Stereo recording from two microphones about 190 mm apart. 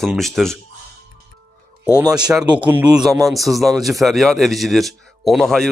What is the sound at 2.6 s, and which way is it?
Speech, 10° right (ahead or behind).